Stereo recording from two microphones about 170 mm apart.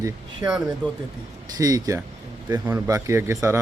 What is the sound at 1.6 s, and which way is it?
A man's voice, 20° right (ahead or behind).